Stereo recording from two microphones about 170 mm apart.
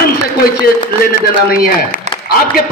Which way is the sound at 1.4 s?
60° left (ahead or behind).